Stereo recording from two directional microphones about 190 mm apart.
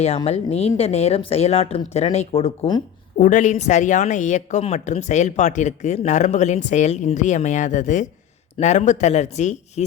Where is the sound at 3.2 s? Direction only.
40° left (ahead or behind).